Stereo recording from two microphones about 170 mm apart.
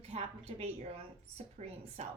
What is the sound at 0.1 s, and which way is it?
A woman's voice, 40° right (ahead or behind).